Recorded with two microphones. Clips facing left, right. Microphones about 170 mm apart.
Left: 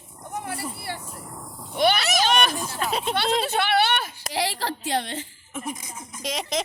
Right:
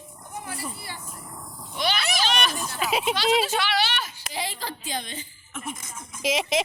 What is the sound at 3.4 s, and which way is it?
Speech, 55° left (ahead or behind).